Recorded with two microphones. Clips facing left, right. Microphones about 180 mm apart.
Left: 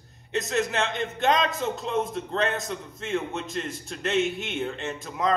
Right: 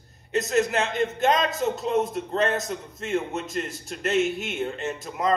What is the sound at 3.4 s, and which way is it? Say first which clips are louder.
Speech: right 2 dB; 5° right (ahead or behind).